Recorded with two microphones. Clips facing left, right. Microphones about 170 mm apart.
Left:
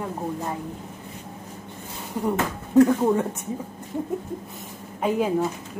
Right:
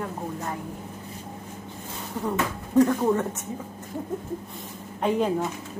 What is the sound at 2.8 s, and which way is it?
Speech, 10° left (ahead or behind).